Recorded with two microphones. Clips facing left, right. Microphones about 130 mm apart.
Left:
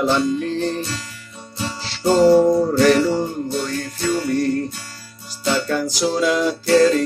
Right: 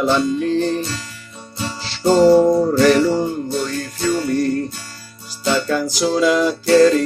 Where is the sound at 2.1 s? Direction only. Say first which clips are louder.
Right 2 dB; 30° right (ahead or behind).